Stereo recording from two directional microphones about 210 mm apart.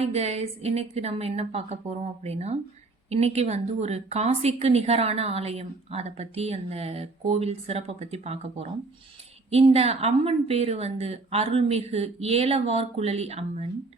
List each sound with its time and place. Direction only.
0.0 s a woman's voice: 30° right (ahead or behind)